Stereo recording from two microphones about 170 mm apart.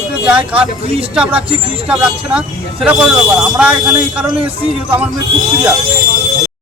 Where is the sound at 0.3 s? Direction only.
10° right (ahead or behind).